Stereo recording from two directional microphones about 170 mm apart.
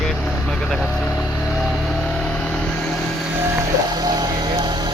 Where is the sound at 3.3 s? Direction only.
15° right (ahead or behind).